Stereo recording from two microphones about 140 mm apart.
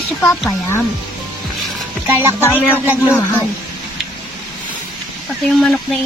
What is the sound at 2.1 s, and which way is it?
Speech, 15° right (ahead or behind).